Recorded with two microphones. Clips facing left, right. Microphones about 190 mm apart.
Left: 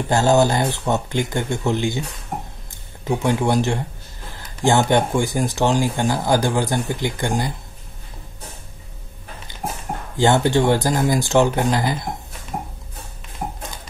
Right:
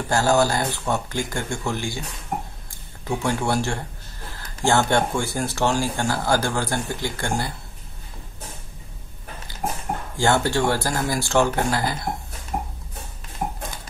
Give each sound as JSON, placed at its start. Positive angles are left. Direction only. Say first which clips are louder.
{"t": 0.1, "sound": "speech", "louder": "left 3 dB", "side_deg": 20}
{"t": 10.1, "sound": "speech", "louder": "left 4 dB", "side_deg": 20}